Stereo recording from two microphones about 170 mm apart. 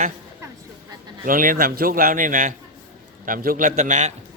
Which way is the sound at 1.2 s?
55° right (ahead or behind).